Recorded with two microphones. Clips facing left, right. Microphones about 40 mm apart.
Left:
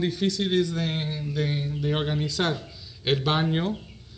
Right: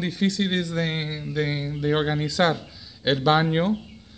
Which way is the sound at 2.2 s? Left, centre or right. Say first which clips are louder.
Right 5 dB; right.